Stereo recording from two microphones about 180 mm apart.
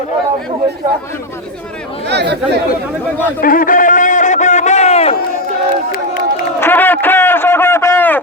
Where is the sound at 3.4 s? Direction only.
50° left (ahead or behind).